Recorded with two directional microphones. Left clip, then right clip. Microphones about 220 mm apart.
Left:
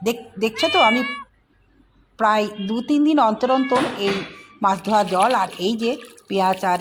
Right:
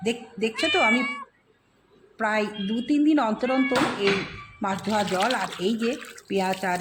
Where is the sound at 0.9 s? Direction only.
25° left (ahead or behind).